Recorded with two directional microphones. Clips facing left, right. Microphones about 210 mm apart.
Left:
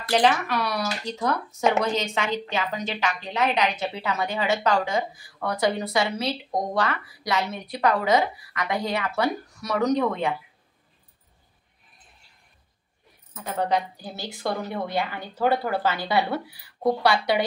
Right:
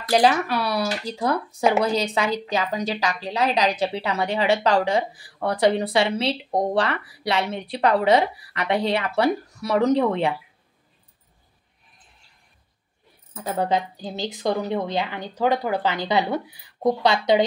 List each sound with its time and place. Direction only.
0.1 s speech: 35° right (ahead or behind)
13.3 s a woman's voice: 30° right (ahead or behind)